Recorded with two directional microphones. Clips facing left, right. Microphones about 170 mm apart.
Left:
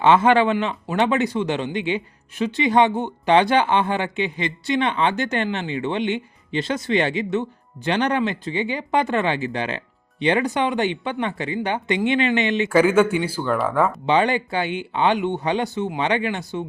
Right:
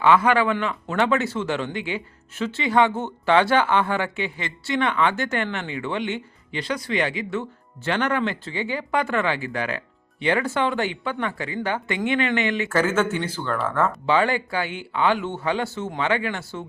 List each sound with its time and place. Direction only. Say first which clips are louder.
0.0 s speech: left 3 dB; 25° left (ahead or behind)